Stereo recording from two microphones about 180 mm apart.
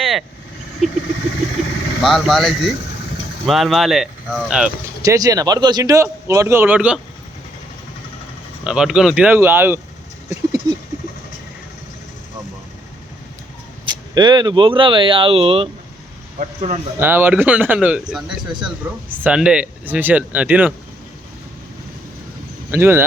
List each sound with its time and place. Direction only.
0.0 s vehicle: centre (ahead or behind)
2.0 s speech: centre (ahead or behind)
5.0 s speech: 20° right (ahead or behind)
8.6 s speech: 5° right (ahead or behind)
10.2 s a sound: 20° right (ahead or behind)
13.9 s a man's voice: 25° right (ahead or behind)
17.0 s speech: 10° right (ahead or behind)
22.7 s speech: 15° right (ahead or behind)